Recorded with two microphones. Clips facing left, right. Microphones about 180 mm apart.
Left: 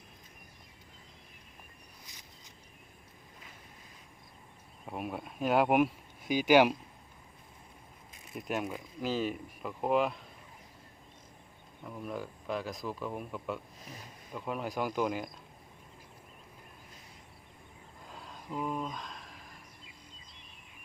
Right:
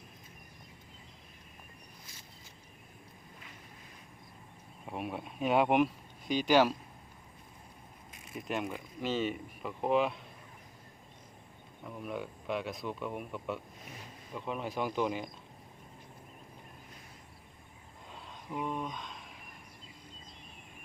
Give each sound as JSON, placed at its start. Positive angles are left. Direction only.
{"t": 4.9, "sound": "speech", "side_deg": 0}
{"t": 8.4, "sound": "speech", "side_deg": 0}
{"t": 11.9, "sound": "speech", "side_deg": 0}
{"t": 18.1, "sound": "a sound", "side_deg": 0}